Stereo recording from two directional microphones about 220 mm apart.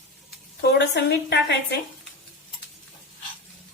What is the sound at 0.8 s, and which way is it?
A woman's voice, 50° left (ahead or behind).